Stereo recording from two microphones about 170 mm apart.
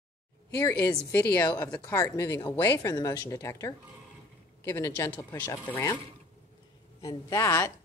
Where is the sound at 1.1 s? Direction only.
10° left (ahead or behind).